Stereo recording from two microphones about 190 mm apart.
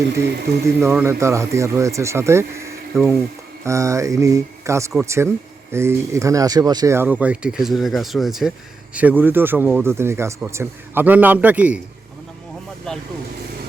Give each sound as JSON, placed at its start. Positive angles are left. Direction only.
{"t": 0.8, "sound": "speech", "side_deg": -15}
{"t": 12.9, "sound": "speech", "side_deg": 5}